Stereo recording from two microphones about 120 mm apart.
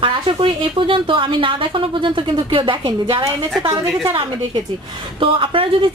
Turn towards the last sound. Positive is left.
turn(degrees=-45)  # may be behind; listen again after turning